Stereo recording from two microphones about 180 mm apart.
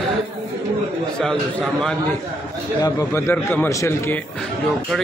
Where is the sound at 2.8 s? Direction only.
15° left (ahead or behind).